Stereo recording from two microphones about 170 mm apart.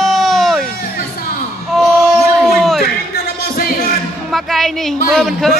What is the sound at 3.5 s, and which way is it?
Music, 65° left (ahead or behind).